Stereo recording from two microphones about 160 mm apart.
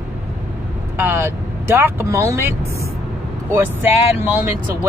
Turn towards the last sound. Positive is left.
turn(degrees=-15)  # may be behind; listen again after turning